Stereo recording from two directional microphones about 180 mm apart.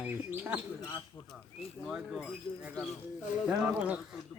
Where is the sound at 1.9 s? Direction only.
Centre (ahead or behind).